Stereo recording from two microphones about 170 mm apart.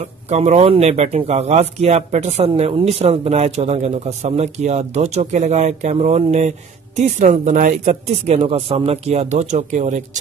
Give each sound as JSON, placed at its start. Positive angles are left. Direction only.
{"t": 0.3, "sound": "speech", "side_deg": -40}